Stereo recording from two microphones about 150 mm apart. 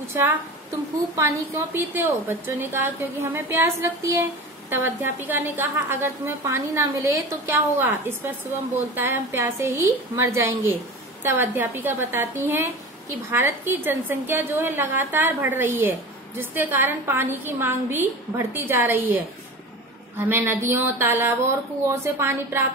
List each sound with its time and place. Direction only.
1.1 s a woman's voice: 20° right (ahead or behind)
20.2 s a woman's voice: 15° right (ahead or behind)